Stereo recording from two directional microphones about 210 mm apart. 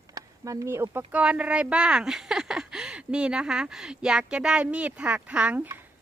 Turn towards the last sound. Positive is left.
turn(degrees=-10)  # may be behind; listen again after turning